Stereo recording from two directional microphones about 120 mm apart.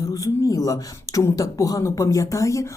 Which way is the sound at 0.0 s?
30° left (ahead or behind).